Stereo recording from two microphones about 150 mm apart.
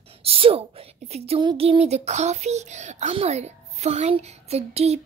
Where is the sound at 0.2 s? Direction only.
40° right (ahead or behind).